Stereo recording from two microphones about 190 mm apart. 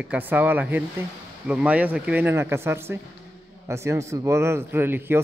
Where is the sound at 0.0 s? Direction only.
10° right (ahead or behind).